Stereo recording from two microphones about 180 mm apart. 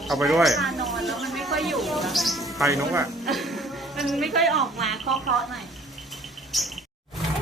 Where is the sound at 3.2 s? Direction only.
Centre (ahead or behind).